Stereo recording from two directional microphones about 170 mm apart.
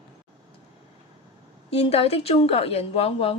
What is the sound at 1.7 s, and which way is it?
A woman's voice, 35° left (ahead or behind).